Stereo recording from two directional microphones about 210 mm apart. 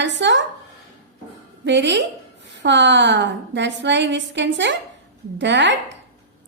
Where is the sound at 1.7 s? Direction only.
55° right (ahead or behind).